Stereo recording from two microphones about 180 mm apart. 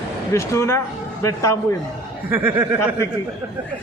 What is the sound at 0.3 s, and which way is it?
Speech, 15° left (ahead or behind).